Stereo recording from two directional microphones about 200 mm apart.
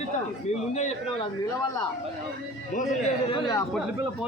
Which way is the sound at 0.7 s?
35° left (ahead or behind).